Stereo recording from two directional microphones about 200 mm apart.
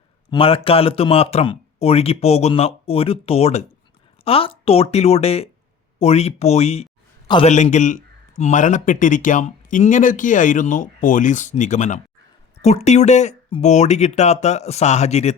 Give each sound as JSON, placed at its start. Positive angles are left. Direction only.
{"t": 0.3, "sound": "a man's voice", "side_deg": 25}